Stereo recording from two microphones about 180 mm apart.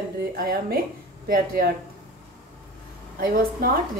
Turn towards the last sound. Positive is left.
turn(degrees=-55)  # may be behind; listen again after turning